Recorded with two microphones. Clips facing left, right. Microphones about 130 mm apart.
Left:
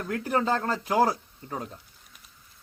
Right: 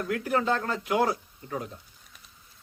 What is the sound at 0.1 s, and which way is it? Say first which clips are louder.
Speech: left 1 dB; 35° left (ahead or behind).